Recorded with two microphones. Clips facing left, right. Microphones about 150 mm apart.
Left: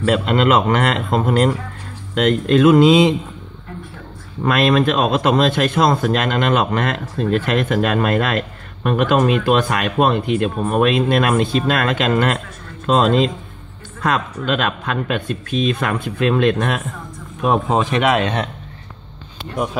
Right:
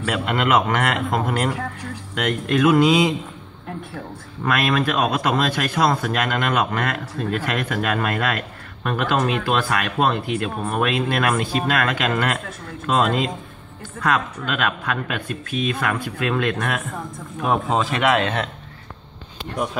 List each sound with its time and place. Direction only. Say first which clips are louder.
0.0 s speech: left 6 dB; 30° left (ahead or behind)
4.5 s speech: left 5 dB; 25° left (ahead or behind)